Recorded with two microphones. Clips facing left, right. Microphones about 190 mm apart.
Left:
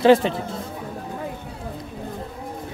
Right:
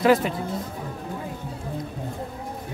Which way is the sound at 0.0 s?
25° left (ahead or behind).